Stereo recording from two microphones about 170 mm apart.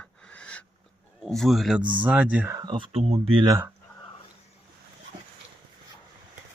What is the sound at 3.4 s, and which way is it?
Speech, 15° right (ahead or behind).